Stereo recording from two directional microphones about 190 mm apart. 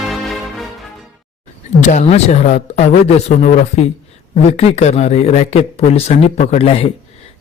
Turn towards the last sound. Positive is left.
turn(degrees=30)  # may be behind; listen again after turning